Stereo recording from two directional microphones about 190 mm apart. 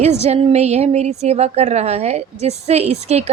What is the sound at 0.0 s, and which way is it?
A woman's voice, 35° right (ahead or behind).